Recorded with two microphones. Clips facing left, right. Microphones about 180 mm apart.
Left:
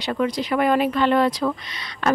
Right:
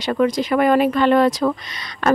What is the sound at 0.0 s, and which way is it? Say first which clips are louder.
Speech: right 5 dB; 50° right (ahead or behind).